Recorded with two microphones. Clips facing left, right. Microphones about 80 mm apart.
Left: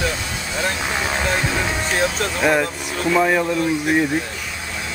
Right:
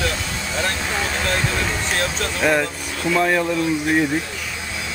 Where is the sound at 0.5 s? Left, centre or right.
Centre.